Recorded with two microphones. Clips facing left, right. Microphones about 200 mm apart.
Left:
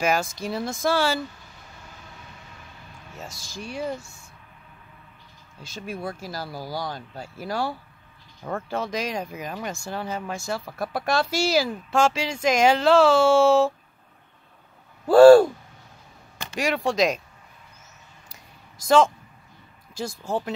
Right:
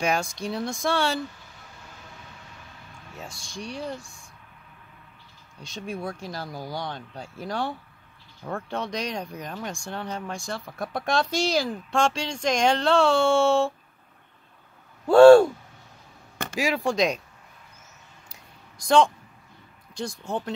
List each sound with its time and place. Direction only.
0.0 s speech: centre (ahead or behind)
3.1 s speech: centre (ahead or behind)
5.6 s speech: 5° left (ahead or behind)
15.0 s speech: 5° left (ahead or behind)
16.5 s speech: centre (ahead or behind)
18.3 s a sound: centre (ahead or behind)